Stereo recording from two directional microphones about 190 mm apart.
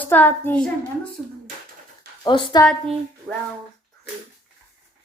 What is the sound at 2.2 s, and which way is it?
Speech, 25° left (ahead or behind).